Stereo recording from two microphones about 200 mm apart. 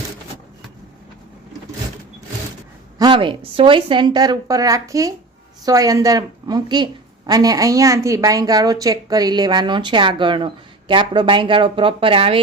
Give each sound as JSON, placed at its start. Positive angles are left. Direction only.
{"t": 3.0, "sound": "a woman's voice", "side_deg": -25}